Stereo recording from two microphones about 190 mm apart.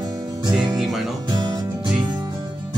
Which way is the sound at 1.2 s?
20° right (ahead or behind).